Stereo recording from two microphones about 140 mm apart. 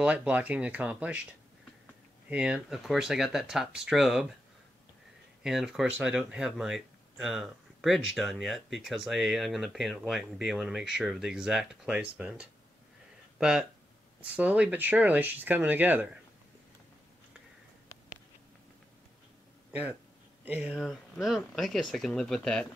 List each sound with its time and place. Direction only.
0.0 s speech: 10° right (ahead or behind)
2.2 s speech: 10° right (ahead or behind)
5.4 s speech: 5° right (ahead or behind)
17.9 s a sound: 25° left (ahead or behind)
19.7 s speech: 10° right (ahead or behind); by 22.7 s 5° left (ahead or behind)